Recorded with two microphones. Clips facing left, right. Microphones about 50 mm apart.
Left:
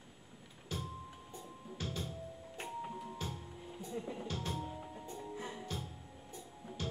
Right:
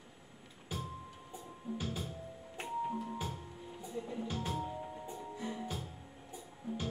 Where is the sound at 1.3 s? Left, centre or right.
Centre.